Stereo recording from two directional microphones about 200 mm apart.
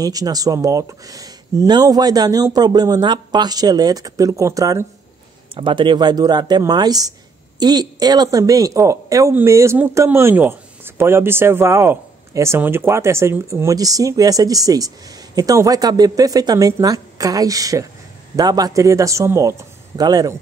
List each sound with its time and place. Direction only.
0.0 s speech: 20° right (ahead or behind)